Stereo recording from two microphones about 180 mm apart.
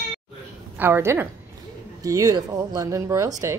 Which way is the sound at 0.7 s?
10° right (ahead or behind).